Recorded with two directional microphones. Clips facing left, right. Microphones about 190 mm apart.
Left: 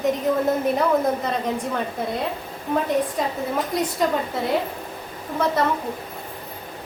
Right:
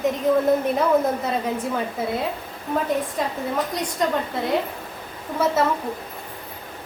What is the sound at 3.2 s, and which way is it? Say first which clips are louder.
A woman's voice: even; centre (ahead or behind).